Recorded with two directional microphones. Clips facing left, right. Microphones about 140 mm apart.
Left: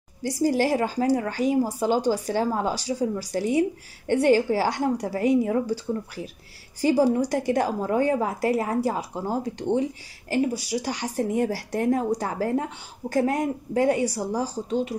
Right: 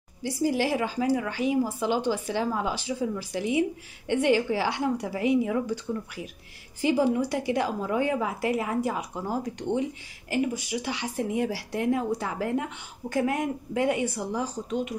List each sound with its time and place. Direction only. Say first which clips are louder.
0.2 s speech: left 3 dB; 40° left (ahead or behind)